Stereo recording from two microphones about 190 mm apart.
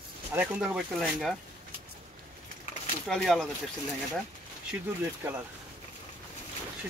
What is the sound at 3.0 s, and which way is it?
Speech, centre (ahead or behind).